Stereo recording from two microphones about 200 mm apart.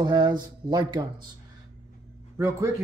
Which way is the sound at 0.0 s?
20° right (ahead or behind).